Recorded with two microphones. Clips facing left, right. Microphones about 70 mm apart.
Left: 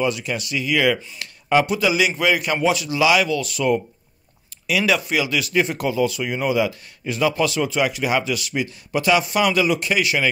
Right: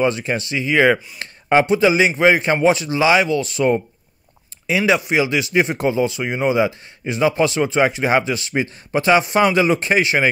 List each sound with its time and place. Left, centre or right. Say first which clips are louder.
0.0 s speech: right 4 dB; right